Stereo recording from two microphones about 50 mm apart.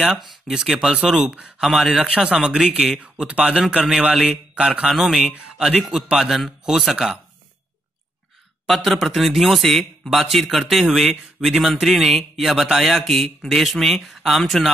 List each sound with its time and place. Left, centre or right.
0.2 s speech: centre
0.6 s speech: centre
1.6 s speech: centre
2.1 s speech: right
3.6 s speech: centre
4.0 s speech: right
4.9 s speech: centre
8.6 s a man's voice: centre